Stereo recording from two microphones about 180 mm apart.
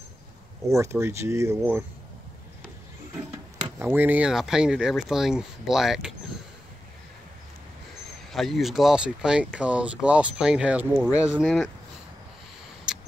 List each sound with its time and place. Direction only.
0.7 s speech: 15° right (ahead or behind)
3.8 s speech: 10° right (ahead or behind)
8.3 s speech: centre (ahead or behind)
12.9 s a sound: 5° right (ahead or behind)